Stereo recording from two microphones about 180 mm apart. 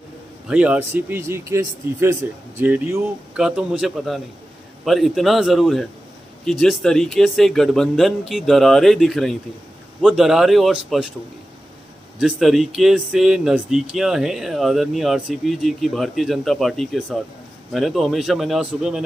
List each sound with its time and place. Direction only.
0.5 s speech: 5° right (ahead or behind)
12.2 s speech: centre (ahead or behind)